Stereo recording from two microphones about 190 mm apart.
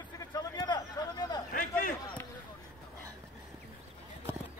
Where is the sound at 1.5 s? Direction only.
45° left (ahead or behind).